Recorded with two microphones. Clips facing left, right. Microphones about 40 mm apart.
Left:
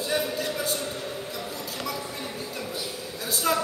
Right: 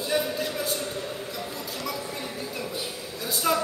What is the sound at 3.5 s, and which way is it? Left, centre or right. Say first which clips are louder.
Speech: even; centre.